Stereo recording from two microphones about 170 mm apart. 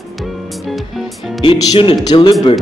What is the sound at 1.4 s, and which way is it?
A man's voice, 30° left (ahead or behind).